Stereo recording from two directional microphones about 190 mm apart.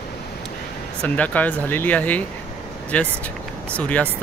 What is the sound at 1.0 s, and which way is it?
Speech, 10° left (ahead or behind).